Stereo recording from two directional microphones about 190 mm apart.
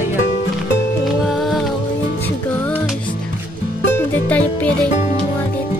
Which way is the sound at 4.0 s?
10° left (ahead or behind).